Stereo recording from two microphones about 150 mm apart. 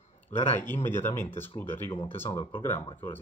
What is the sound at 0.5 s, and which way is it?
Speech, 15° left (ahead or behind).